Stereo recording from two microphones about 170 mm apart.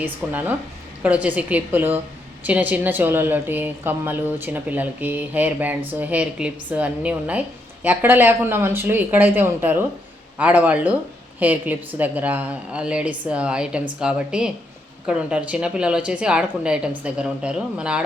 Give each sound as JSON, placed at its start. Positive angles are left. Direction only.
{"t": 0.0, "sound": "a woman's voice", "side_deg": -10}